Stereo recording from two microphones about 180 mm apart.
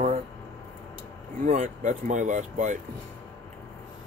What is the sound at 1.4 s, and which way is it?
Speech, 40° right (ahead or behind).